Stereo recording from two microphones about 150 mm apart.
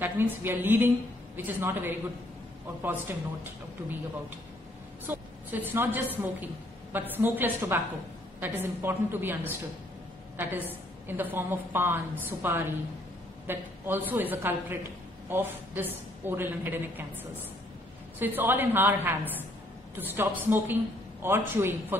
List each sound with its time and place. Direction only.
0.0 s a woman's voice: 15° right (ahead or behind)
5.0 s a woman's voice: 10° right (ahead or behind)